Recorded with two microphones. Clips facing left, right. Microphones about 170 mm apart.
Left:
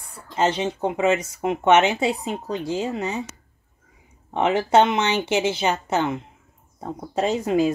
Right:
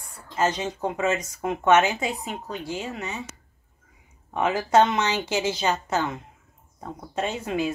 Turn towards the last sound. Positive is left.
turn(degrees=35)  # may be behind; listen again after turning